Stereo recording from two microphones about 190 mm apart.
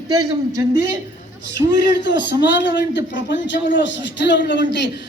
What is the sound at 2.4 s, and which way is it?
A man's voice, 70° left (ahead or behind).